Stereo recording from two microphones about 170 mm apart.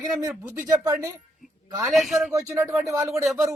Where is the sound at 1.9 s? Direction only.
Centre (ahead or behind).